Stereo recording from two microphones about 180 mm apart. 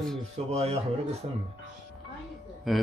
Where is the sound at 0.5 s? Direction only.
35° right (ahead or behind).